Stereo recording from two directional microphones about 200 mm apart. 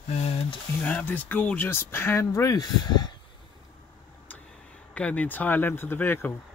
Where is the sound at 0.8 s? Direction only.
5° left (ahead or behind).